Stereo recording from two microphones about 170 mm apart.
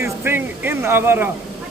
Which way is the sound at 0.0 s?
15° right (ahead or behind).